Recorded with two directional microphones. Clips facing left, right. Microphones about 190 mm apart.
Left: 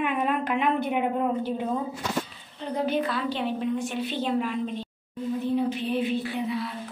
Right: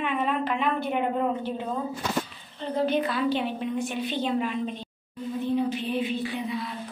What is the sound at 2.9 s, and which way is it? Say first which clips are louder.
A woman's voice: right 2 dB; centre (ahead or behind).